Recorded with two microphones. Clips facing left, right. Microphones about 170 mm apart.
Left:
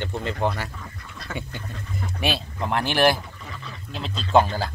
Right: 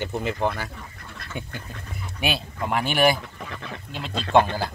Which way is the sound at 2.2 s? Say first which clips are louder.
Even; centre (ahead or behind).